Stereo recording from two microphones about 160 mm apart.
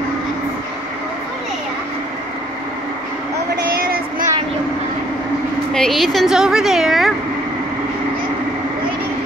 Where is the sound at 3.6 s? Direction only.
70° right (ahead or behind).